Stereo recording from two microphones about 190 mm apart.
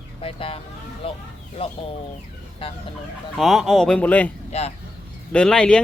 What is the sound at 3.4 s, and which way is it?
Speech, centre (ahead or behind).